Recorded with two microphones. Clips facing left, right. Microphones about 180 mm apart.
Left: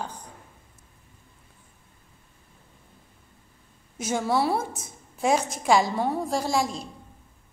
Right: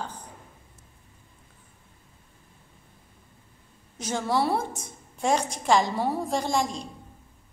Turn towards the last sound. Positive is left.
turn(degrees=5)  # may be behind; listen again after turning